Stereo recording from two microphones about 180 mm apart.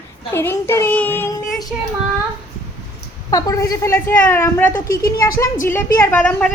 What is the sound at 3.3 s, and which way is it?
A woman's voice, 20° left (ahead or behind).